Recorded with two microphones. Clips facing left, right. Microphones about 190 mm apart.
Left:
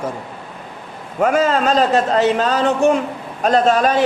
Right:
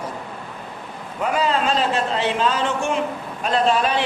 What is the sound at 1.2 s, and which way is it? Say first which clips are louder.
A man's voice: left 5 dB; 45° left (ahead or behind).